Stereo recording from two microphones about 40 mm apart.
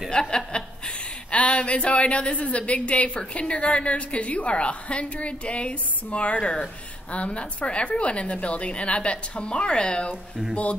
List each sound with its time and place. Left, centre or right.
0.1 s chuckle: left
1.3 s a woman's voice: left